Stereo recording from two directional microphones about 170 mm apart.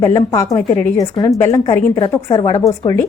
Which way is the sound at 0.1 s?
20° left (ahead or behind).